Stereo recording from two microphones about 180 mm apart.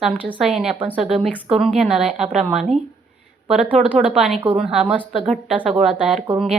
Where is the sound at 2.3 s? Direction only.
40° right (ahead or behind).